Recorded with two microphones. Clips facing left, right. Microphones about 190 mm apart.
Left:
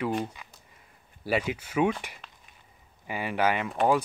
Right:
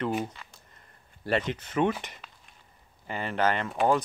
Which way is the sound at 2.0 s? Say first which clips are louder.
Even; 10° left (ahead or behind).